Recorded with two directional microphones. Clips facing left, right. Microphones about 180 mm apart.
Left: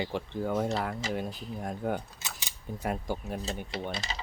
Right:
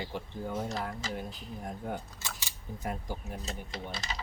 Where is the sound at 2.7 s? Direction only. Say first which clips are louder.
Left 5 dB; 80° left.